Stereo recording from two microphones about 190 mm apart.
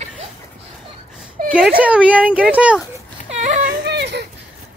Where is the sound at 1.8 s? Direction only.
5° right (ahead or behind).